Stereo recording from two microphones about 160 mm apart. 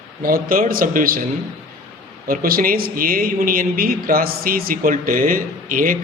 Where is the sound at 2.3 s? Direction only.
65° right (ahead or behind).